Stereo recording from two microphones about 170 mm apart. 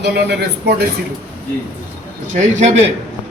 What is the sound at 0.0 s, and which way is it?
Speech, 75° right (ahead or behind).